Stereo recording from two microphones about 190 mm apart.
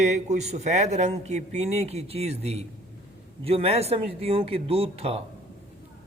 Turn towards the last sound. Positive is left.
turn(degrees=-30)  # may be behind; listen again after turning